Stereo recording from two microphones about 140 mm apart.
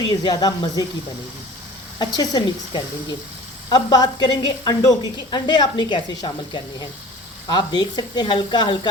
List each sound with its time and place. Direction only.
0.2 s speech: 30° left (ahead or behind)
2.0 s speech: 30° left (ahead or behind)